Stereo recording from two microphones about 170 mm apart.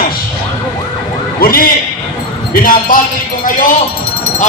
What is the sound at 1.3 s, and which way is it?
A man's voice, 60° left (ahead or behind).